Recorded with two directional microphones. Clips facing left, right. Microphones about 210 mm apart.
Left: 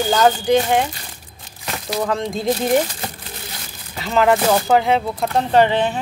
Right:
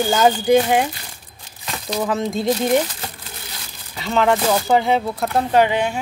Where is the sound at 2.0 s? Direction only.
5° right (ahead or behind).